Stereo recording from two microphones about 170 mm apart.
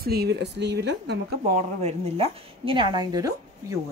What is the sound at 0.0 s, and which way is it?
Speech, 70° right (ahead or behind).